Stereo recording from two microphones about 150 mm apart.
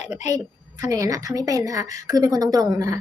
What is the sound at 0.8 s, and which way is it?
Speech, 20° right (ahead or behind).